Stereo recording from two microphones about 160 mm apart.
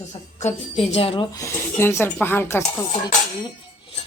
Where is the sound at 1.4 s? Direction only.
15° left (ahead or behind).